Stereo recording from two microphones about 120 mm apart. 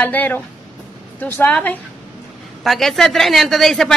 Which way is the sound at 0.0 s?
15° left (ahead or behind).